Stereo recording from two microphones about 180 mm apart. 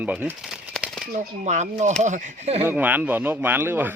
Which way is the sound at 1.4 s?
40° right (ahead or behind).